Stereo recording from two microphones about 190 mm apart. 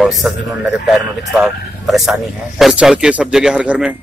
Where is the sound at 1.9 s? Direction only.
Centre (ahead or behind).